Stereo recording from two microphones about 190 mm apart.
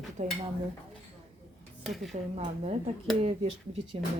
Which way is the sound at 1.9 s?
Centre (ahead or behind).